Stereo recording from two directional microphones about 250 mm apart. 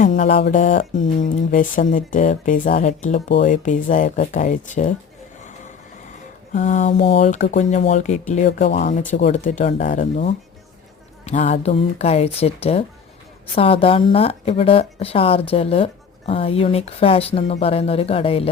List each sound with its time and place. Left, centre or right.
0.0 s speech: left
3.2 s speech: left
3.5 s speech: left
6.5 s speech: left